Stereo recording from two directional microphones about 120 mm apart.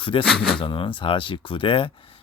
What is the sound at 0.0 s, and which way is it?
Speech, 45° left (ahead or behind).